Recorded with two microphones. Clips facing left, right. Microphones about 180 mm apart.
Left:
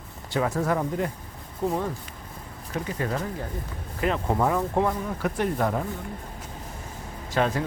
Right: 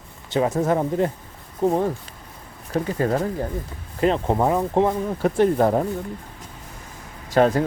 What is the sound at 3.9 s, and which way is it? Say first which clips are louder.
Speech: right 5 dB; 30° right (ahead or behind).